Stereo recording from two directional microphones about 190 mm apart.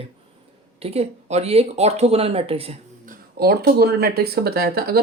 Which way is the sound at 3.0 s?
50° right (ahead or behind).